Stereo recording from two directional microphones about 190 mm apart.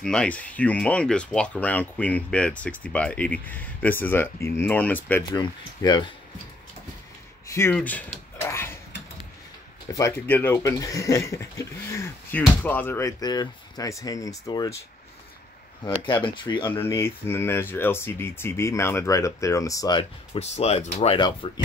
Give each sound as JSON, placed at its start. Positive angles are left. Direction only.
{"t": 0.0, "sound": "speech", "side_deg": 5}
{"t": 5.4, "sound": "speech", "side_deg": 20}
{"t": 7.4, "sound": "a sound", "side_deg": 15}
{"t": 9.9, "sound": "speech", "side_deg": 15}
{"t": 16.1, "sound": "speech", "side_deg": 25}
{"t": 16.7, "sound": "speech", "side_deg": 15}